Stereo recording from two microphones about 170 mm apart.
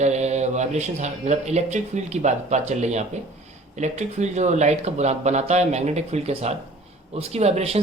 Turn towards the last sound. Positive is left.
turn(degrees=-40)  # may be behind; listen again after turning